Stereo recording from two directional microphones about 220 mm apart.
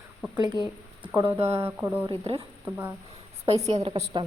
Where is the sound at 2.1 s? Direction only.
25° right (ahead or behind).